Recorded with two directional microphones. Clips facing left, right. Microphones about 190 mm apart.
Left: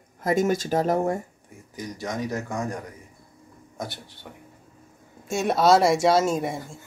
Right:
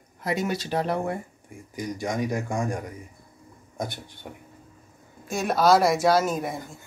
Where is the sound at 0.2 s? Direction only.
45° left (ahead or behind).